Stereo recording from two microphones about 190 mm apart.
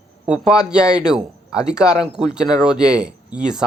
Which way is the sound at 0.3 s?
5° right (ahead or behind).